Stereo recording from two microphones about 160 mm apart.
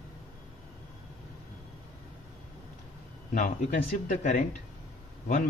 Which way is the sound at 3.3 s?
55° left (ahead or behind).